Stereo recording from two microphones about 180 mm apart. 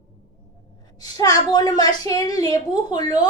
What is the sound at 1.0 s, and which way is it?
A woman's voice, 20° left (ahead or behind).